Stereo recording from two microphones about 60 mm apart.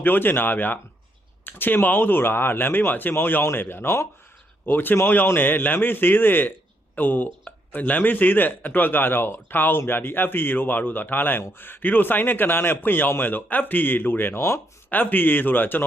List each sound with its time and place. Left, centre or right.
0.0 s speech: left
4.6 s speech: left
14.8 s speech: left